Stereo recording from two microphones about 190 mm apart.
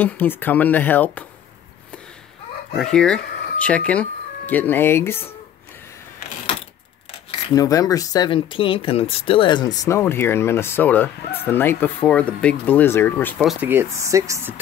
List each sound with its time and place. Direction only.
0.0 s speech: 10° left (ahead or behind)
2.7 s speech: 5° left (ahead or behind)
7.5 s speech: 20° left (ahead or behind)
13.4 s speech: centre (ahead or behind)
13.7 s speech: 15° right (ahead or behind)